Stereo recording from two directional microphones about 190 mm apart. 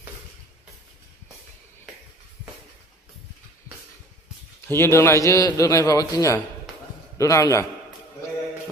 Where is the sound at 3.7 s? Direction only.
15° left (ahead or behind).